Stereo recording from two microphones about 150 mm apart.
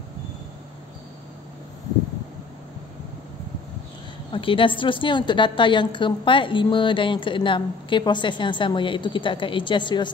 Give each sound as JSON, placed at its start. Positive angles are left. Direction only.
{"t": 4.3, "sound": "a woman's voice", "side_deg": 35}